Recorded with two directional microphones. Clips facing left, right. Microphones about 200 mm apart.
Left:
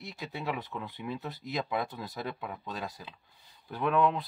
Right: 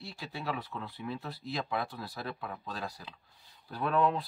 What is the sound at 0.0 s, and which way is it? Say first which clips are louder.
Speech: left 2 dB; 20° left (ahead or behind).